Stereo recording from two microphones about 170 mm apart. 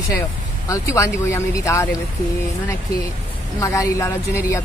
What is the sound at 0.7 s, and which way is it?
A woman's voice, 15° left (ahead or behind).